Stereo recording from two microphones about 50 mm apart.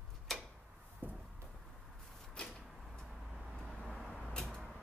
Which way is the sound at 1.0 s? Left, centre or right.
Right.